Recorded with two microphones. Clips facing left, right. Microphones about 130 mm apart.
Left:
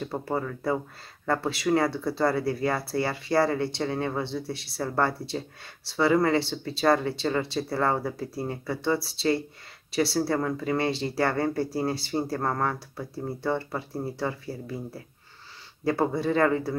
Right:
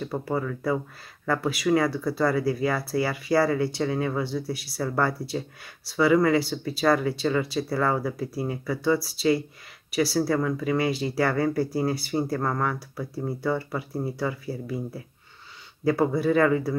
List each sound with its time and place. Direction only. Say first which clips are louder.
0.0 s speech: right 1 dB; 30° left (ahead or behind)
15.8 s speech: right 3 dB; 25° left (ahead or behind)